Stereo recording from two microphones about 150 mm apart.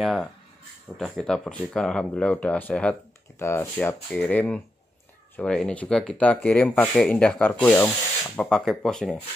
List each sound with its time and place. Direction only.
0.0 s speech: centre (ahead or behind)